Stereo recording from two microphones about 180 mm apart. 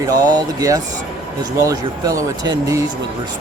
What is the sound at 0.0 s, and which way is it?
Speech, 20° right (ahead or behind).